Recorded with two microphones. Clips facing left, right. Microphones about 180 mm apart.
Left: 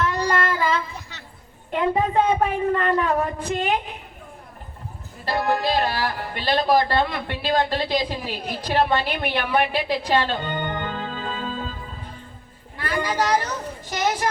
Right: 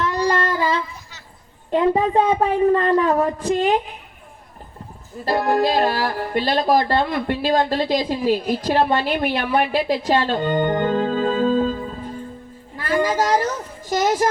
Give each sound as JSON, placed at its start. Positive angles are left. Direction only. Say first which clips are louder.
{"t": 0.0, "sound": "child singing", "louder": "right 2 dB", "side_deg": -35}
{"t": 1.7, "sound": "speech", "louder": "right 4 dB", "side_deg": -35}
{"t": 5.2, "sound": "speech", "louder": "right 4 dB", "side_deg": -45}
{"t": 12.7, "sound": "a woman's voice", "louder": "right 5 dB", "side_deg": -45}